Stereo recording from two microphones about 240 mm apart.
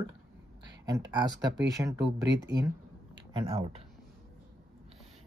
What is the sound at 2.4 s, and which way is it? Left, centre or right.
Speech, centre.